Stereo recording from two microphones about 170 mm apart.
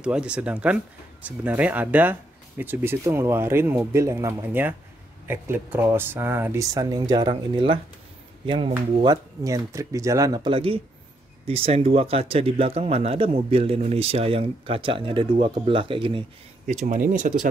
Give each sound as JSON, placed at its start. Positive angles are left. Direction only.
{"t": 0.0, "sound": "speech", "side_deg": -5}
{"t": 16.8, "sound": "speech", "side_deg": -45}